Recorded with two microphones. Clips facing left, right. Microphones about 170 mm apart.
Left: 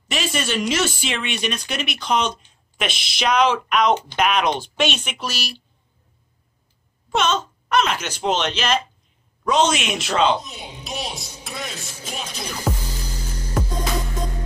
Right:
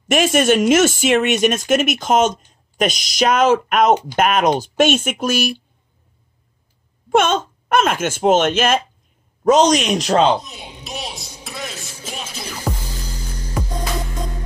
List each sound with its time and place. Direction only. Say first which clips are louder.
0.1 s speech: right 10 dB; 50° right (ahead or behind)
7.1 s speech: right 5 dB; 50° right (ahead or behind)
10.3 s speech: right 3 dB; centre (ahead or behind)
12.7 s music: even; 5° left (ahead or behind)